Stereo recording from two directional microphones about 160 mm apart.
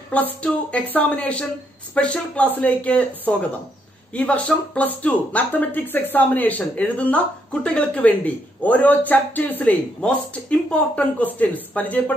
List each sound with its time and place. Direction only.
0.1 s speech: 5° left (ahead or behind)